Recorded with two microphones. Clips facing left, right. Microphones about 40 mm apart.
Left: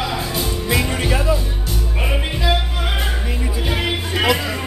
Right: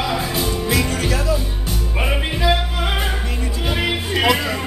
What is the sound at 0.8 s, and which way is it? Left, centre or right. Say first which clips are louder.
Music: left 1 dB; left.